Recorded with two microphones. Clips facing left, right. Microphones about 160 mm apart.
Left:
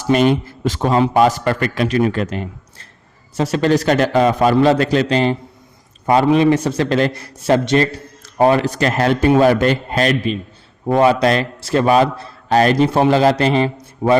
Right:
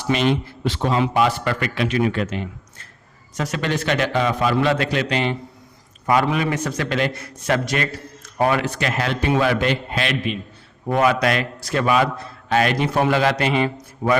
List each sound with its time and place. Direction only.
0.1 s a man's voice: 45° left (ahead or behind)